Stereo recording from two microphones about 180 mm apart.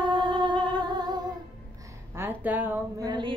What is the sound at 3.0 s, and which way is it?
Mantra, 25° right (ahead or behind).